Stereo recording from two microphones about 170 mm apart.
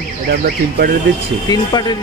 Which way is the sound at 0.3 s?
65° right (ahead or behind).